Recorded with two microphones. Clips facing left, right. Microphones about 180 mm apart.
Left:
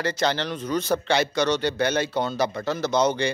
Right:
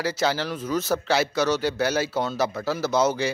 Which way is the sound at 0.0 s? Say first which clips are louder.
Even; 5° right (ahead or behind).